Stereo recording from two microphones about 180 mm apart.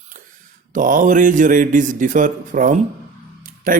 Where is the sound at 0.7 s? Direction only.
45° right (ahead or behind).